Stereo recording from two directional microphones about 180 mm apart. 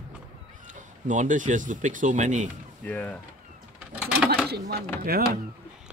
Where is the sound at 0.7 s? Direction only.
45° right (ahead or behind).